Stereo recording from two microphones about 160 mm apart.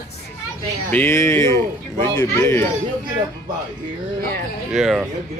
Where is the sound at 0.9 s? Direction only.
15° left (ahead or behind).